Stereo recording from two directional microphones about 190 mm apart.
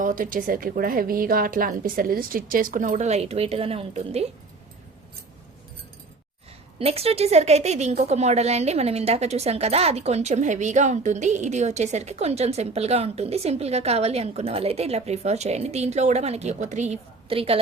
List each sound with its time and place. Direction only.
0.0 s a woman's voice: 45° right (ahead or behind)
6.7 s a woman's voice: 30° right (ahead or behind)